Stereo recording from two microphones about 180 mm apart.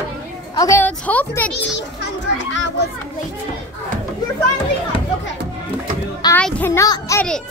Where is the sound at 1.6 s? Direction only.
75° left (ahead or behind).